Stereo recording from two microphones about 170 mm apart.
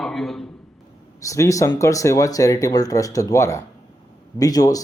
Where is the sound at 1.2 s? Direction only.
20° left (ahead or behind).